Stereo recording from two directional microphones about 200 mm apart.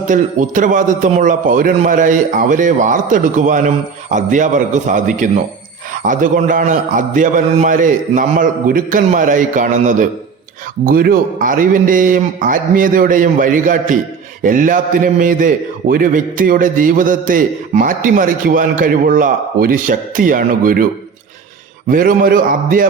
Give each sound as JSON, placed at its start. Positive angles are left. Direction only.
{"t": 0.1, "sound": "a man's voice", "side_deg": -40}
{"t": 21.8, "sound": "a man's voice", "side_deg": -45}